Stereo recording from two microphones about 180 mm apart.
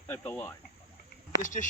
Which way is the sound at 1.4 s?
45° left (ahead or behind).